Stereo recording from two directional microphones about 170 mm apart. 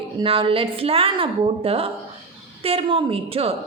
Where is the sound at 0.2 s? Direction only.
30° right (ahead or behind).